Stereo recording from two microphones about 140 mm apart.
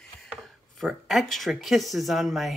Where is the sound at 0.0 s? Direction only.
5° left (ahead or behind).